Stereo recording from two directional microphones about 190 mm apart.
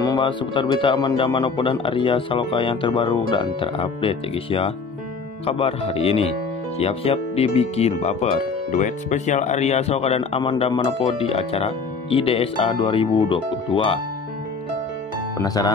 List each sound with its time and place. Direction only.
0.0 s speech: 25° left (ahead or behind)
15.3 s speech: 20° left (ahead or behind)